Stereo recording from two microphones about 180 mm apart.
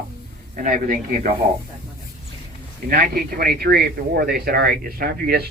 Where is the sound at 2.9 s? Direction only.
55° right (ahead or behind).